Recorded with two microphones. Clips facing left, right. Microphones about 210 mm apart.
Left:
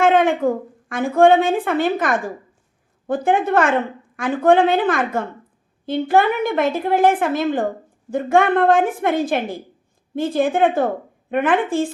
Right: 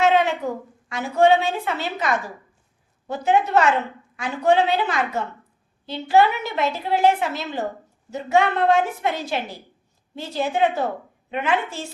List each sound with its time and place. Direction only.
0.0 s a woman's voice: 50° left (ahead or behind)